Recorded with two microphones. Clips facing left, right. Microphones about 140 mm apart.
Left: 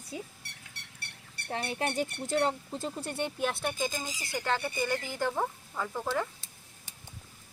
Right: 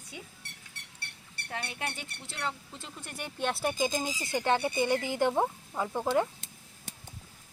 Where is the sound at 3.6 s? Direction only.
15° right (ahead or behind).